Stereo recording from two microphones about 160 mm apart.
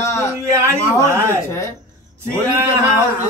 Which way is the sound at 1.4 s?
20° left (ahead or behind).